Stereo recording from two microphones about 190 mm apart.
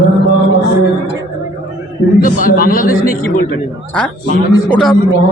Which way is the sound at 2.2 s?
50° left (ahead or behind).